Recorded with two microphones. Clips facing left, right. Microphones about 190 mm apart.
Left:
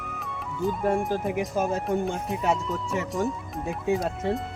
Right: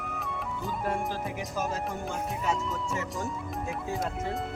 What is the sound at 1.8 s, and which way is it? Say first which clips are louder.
Speech: left 7 dB; centre (ahead or behind).